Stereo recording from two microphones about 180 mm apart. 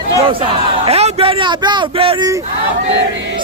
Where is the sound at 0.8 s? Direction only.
35° right (ahead or behind).